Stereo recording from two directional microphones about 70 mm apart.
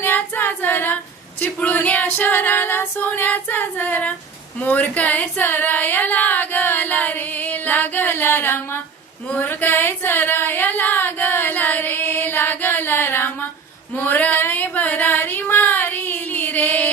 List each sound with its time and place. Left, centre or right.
0.0 s female singing: left
4.6 s a sound: left
13.9 s female singing: left